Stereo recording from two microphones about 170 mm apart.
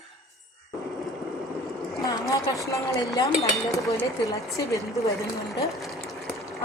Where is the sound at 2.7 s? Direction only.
20° left (ahead or behind).